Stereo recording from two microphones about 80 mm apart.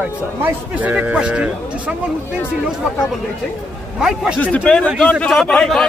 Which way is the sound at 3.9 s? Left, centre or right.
Centre.